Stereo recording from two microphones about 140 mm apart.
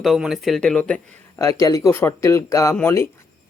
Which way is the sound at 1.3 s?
25° left (ahead or behind).